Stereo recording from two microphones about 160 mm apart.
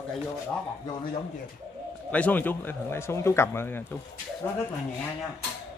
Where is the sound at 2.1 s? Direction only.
10° left (ahead or behind).